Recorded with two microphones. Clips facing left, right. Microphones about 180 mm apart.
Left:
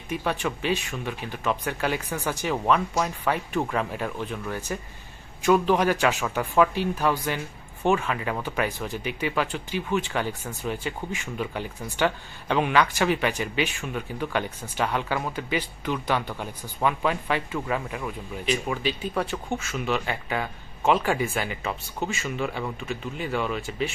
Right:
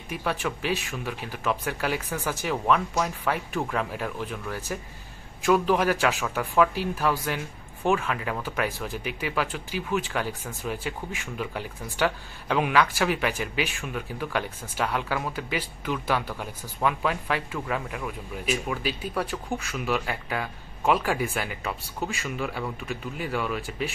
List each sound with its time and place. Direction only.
0.1 s speech: centre (ahead or behind)